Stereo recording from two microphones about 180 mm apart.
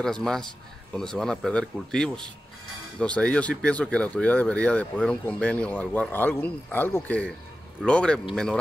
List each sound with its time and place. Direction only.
0.0 s speech: 5° left (ahead or behind)